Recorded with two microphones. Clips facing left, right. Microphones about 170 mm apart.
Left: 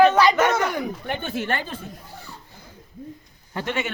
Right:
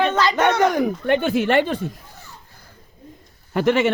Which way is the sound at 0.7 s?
45° right (ahead or behind).